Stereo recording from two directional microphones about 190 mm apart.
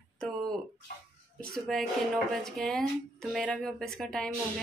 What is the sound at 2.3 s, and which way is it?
Speech, centre (ahead or behind).